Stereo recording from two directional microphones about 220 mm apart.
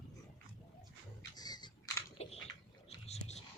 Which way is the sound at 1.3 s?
20° left (ahead or behind).